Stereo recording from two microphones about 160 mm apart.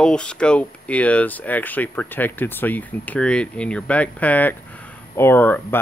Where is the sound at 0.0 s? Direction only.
5° left (ahead or behind).